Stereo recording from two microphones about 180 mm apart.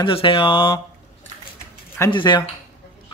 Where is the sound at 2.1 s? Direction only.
25° left (ahead or behind).